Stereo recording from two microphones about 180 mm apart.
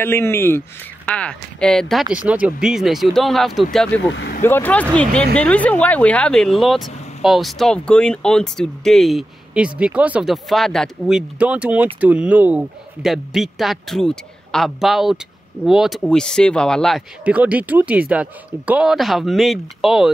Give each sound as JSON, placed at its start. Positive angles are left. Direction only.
{"t": 0.0, "sound": "speech", "side_deg": 15}
{"t": 4.1, "sound": "speech", "side_deg": 75}
{"t": 4.4, "sound": "speech", "side_deg": 10}